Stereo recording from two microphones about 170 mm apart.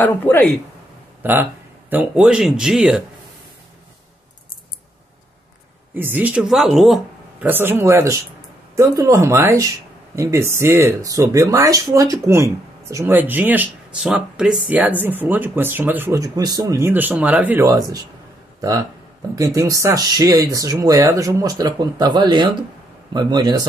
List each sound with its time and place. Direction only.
0.0 s speech: 10° left (ahead or behind)
1.2 s speech: 10° right (ahead or behind)
5.9 s speech: 10° right (ahead or behind)
7.4 s speech: 10° right (ahead or behind)
17.6 s speech: 20° right (ahead or behind)